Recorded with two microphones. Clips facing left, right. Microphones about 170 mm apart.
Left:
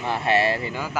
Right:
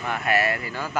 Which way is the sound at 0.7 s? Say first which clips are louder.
Even; 10° left (ahead or behind).